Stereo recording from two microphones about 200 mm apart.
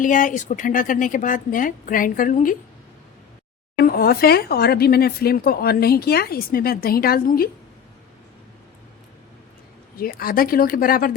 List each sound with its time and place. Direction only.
0.0 s a woman's voice: 40° left (ahead or behind)
3.8 s speech: 50° left (ahead or behind)
10.0 s speech: 45° left (ahead or behind)